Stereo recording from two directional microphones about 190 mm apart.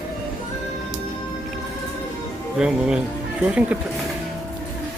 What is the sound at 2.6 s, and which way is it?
Speech, 5° right (ahead or behind).